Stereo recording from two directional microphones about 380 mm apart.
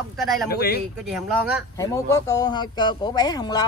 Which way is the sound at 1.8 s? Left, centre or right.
Centre.